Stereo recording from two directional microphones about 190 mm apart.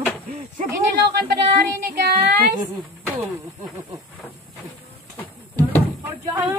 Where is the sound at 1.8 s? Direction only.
55° right (ahead or behind).